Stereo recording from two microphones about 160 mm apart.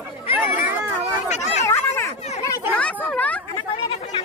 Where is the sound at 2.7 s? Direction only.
10° left (ahead or behind).